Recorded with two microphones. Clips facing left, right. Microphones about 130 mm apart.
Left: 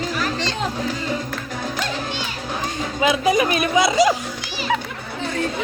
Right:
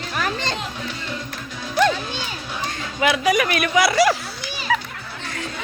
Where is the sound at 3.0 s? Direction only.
25° left (ahead or behind).